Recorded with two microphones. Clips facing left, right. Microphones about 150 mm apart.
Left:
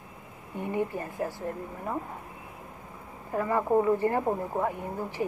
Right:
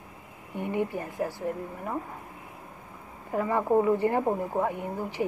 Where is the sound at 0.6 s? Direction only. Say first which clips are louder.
Right 1 dB; 15° right (ahead or behind).